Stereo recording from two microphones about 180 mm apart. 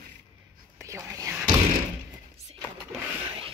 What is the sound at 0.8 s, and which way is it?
Whispering, 15° right (ahead or behind).